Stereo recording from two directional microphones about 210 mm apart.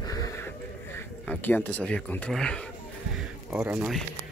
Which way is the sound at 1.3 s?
10° left (ahead or behind).